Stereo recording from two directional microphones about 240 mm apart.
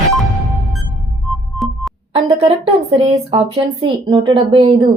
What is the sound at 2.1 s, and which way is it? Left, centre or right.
Speech, right.